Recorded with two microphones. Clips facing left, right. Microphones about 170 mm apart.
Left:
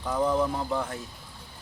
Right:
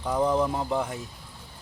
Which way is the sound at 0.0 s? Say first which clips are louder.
Right 1 dB; 20° right (ahead or behind).